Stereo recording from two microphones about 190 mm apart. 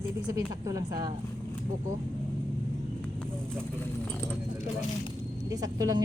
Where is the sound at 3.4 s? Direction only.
10° left (ahead or behind).